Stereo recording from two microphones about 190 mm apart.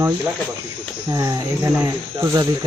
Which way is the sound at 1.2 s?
15° right (ahead or behind).